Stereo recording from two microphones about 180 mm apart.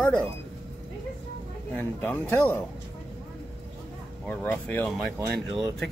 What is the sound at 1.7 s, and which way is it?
Speech, 10° left (ahead or behind).